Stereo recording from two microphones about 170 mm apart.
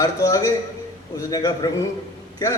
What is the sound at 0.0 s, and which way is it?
A man's voice, 20° left (ahead or behind).